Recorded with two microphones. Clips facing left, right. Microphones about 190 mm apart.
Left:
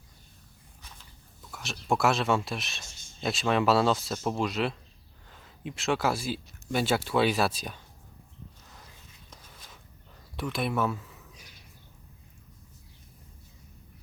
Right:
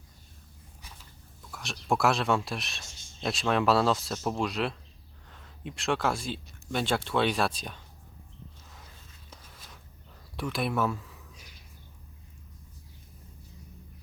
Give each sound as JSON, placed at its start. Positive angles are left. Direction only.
{"t": 0.8, "sound": "walk", "side_deg": -10}
{"t": 1.4, "sound": "speech", "side_deg": 0}
{"t": 9.3, "sound": "a sound", "side_deg": -5}
{"t": 10.3, "sound": "speech", "side_deg": 0}